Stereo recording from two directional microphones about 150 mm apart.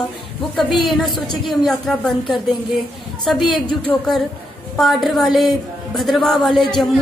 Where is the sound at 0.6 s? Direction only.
Centre (ahead or behind).